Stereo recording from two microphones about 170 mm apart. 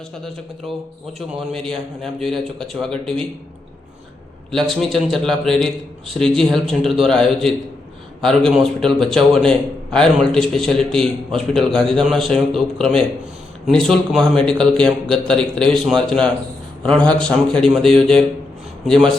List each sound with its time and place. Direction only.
0.7 s a man's voice: centre (ahead or behind)
4.5 s a man's voice: centre (ahead or behind)